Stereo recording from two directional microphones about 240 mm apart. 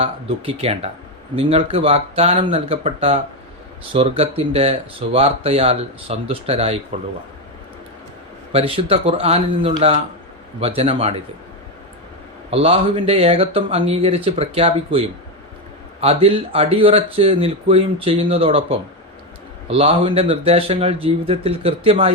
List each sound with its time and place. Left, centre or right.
0.0 s speech: right
8.5 s speech: right
12.5 s speech: right
19.6 s speech: right